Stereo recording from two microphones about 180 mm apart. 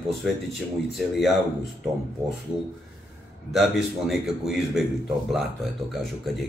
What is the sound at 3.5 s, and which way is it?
Speech, centre (ahead or behind).